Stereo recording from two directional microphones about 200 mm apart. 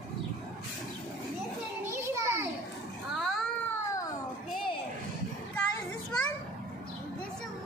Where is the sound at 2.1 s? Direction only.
15° right (ahead or behind).